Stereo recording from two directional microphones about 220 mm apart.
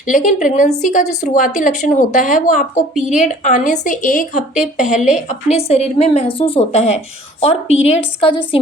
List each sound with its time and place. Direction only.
0.1 s a woman's voice: 35° left (ahead or behind)